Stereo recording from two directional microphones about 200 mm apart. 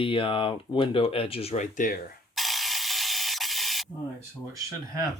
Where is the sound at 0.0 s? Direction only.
25° left (ahead or behind); by 2.0 s 40° left (ahead or behind).